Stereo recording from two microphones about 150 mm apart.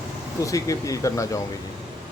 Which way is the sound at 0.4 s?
20° left (ahead or behind).